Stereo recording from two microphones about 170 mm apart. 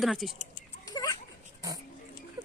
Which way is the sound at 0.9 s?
20° left (ahead or behind).